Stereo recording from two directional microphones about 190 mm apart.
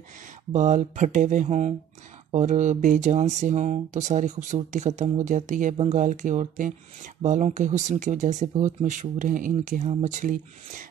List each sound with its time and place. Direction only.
0.5 s speech: 40° right (ahead or behind)